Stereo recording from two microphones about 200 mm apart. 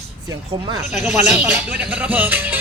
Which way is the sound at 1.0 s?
Centre (ahead or behind).